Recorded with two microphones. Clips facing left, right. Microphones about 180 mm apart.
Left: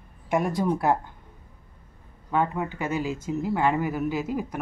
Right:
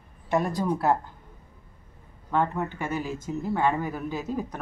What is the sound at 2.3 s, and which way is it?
Speech, 10° left (ahead or behind).